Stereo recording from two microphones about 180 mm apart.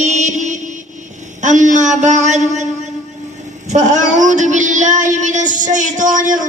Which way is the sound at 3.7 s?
45° right (ahead or behind).